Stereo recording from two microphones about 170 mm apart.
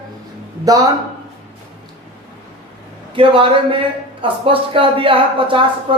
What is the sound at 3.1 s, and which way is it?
A woman's voice, 30° right (ahead or behind).